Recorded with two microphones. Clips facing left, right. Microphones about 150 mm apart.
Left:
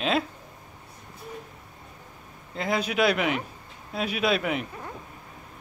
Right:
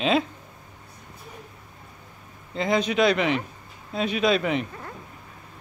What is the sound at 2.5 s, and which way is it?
Speech, 5° left (ahead or behind).